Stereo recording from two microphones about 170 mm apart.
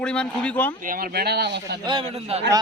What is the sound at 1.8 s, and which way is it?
Speech, 30° right (ahead or behind).